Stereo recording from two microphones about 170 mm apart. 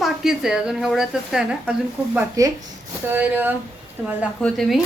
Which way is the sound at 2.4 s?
20° right (ahead or behind).